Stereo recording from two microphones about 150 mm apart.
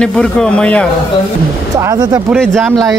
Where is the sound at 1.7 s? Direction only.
25° right (ahead or behind).